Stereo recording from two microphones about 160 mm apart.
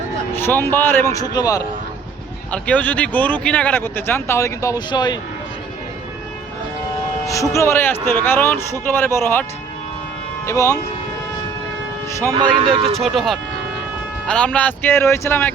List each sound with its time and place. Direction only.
0.3 s speech: 15° left (ahead or behind)
2.5 s speech: 10° left (ahead or behind); by 5.1 s 30° left (ahead or behind)
7.5 s speech: 15° left (ahead or behind)
12.3 s speech: 30° right (ahead or behind)
13.1 s speech: centre (ahead or behind)